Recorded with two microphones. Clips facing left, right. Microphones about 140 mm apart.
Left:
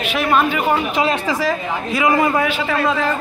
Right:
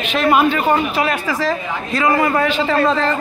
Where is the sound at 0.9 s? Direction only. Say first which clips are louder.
Left 1 dB; 20° left (ahead or behind).